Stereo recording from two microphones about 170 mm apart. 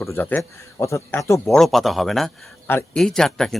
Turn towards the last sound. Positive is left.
turn(degrees=5)  # may be behind; listen again after turning